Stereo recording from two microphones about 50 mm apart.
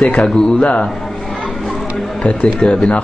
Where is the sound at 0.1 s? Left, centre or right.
Centre.